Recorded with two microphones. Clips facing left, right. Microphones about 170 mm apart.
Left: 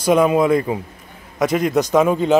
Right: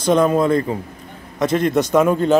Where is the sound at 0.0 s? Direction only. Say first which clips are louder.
Left 1 dB; 10° left (ahead or behind).